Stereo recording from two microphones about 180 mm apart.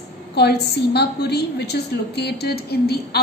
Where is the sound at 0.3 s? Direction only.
65° left (ahead or behind).